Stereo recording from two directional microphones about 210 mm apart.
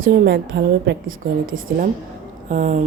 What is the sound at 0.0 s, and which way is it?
A woman's voice, 45° right (ahead or behind).